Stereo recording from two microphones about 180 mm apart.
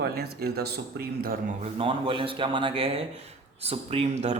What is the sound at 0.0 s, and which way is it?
A man's voice, 60° right (ahead or behind).